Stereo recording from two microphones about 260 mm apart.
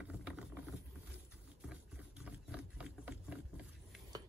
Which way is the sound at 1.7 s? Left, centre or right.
Centre.